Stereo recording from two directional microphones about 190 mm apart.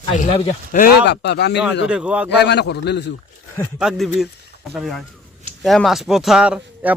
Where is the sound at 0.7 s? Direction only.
45° left (ahead or behind).